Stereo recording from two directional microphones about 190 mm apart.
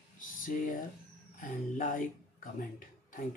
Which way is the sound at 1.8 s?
45° left (ahead or behind).